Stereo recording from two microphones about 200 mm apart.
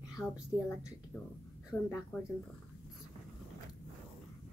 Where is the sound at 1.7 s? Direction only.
Centre (ahead or behind).